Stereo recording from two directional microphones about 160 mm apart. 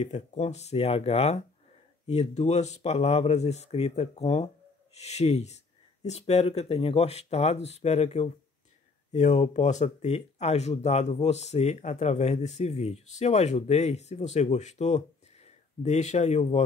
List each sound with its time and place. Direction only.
0.0 s speech: 45° left (ahead or behind)